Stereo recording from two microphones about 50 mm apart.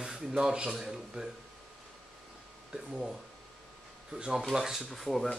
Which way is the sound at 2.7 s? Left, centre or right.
Centre.